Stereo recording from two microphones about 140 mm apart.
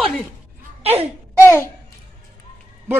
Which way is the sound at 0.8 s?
45° right (ahead or behind).